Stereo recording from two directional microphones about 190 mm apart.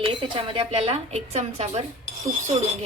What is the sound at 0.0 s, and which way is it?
A woman's voice, 25° right (ahead or behind).